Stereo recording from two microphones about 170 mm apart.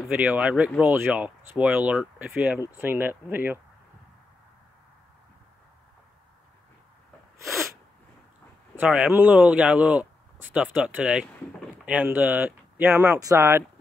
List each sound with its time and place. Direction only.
0.1 s speech: 10° right (ahead or behind)
8.7 s speech: 5° right (ahead or behind)